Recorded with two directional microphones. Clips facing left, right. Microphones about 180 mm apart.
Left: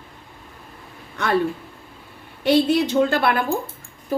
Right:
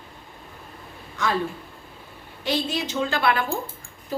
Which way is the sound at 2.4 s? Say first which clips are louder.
Left 9 dB; 60° left (ahead or behind).